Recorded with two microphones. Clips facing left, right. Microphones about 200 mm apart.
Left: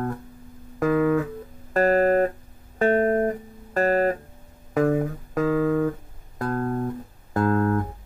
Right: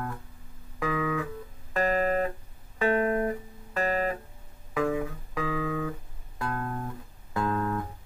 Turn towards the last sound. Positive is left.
turn(degrees=50)  # may be behind; listen again after turning